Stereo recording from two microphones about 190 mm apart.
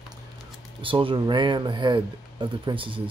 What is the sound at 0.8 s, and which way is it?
Speech, 25° right (ahead or behind).